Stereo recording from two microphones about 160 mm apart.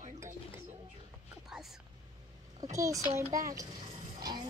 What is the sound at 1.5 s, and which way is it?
Whispering, centre (ahead or behind).